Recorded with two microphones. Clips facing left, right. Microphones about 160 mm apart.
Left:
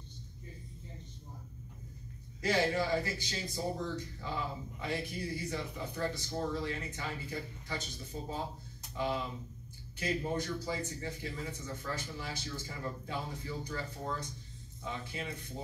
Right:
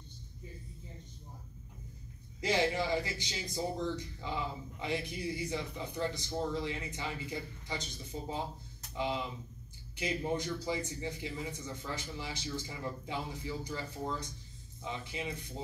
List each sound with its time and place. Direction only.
2.4 s speech: 15° right (ahead or behind)